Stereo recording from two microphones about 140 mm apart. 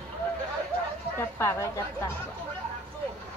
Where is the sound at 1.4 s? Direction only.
20° left (ahead or behind).